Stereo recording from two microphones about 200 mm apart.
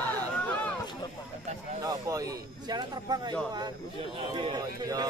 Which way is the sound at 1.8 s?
15° right (ahead or behind).